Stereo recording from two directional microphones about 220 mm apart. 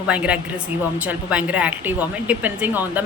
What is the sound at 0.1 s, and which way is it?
A woman's voice, 5° right (ahead or behind).